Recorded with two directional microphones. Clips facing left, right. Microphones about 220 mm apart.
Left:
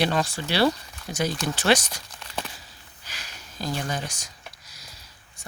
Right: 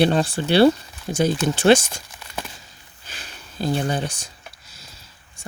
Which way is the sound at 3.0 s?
30° right (ahead or behind).